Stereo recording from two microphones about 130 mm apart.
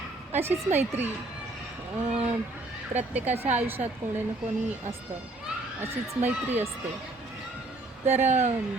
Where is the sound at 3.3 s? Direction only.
50° right (ahead or behind).